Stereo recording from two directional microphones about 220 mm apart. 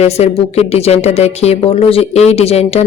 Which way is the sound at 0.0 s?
30° left (ahead or behind).